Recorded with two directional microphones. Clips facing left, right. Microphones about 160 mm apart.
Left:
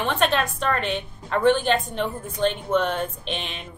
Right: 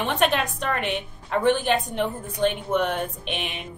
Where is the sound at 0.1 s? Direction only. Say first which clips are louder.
Even; 15° right (ahead or behind).